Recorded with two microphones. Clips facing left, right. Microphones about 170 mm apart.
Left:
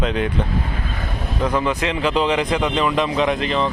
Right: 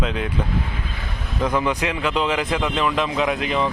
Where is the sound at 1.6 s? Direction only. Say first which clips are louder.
Left 1 dB; 15° right (ahead or behind).